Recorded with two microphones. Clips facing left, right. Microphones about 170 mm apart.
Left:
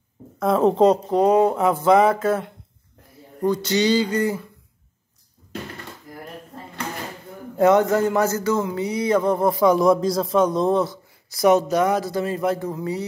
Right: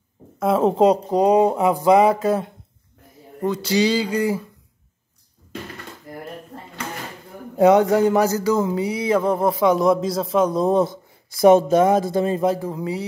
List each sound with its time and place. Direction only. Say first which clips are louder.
0.4 s speech: even; 5° right (ahead or behind)
7.5 s speech: right 2 dB; 15° right (ahead or behind)
10.8 s a sound: right 3 dB; 50° right (ahead or behind)
11.4 s speech: right 4 dB; 25° right (ahead or behind)